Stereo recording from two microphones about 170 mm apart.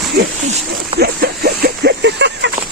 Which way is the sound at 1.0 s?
65° right (ahead or behind).